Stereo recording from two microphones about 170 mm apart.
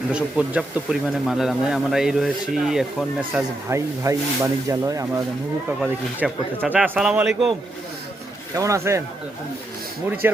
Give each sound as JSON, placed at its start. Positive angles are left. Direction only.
{"t": 0.1, "sound": "speech", "side_deg": -5}
{"t": 3.7, "sound": "speech", "side_deg": -15}
{"t": 5.8, "sound": "speech", "side_deg": -5}
{"t": 8.5, "sound": "speech", "side_deg": -20}
{"t": 10.2, "sound": "speech", "side_deg": -15}